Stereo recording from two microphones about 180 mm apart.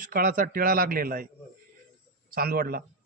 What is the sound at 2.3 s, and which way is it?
Speech, 55° right (ahead or behind).